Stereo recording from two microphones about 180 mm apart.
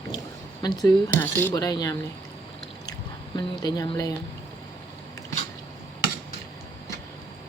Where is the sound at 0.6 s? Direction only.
20° left (ahead or behind).